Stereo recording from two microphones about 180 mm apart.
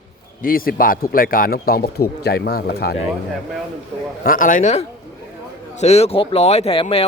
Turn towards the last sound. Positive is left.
turn(degrees=30)  # may be behind; listen again after turning